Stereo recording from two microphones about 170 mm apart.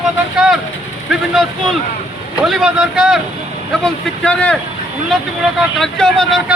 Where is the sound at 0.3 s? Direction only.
5° right (ahead or behind).